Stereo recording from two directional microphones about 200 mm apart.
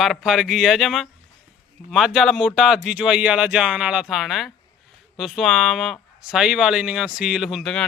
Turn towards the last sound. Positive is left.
turn(degrees=0)  # may be behind; listen again after turning